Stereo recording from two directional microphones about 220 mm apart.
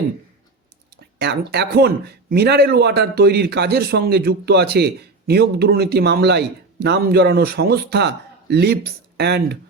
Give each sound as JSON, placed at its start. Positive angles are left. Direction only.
{"t": 1.2, "sound": "speech", "side_deg": -50}